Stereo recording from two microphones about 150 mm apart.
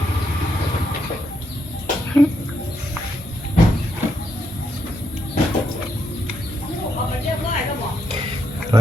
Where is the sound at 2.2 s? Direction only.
15° left (ahead or behind).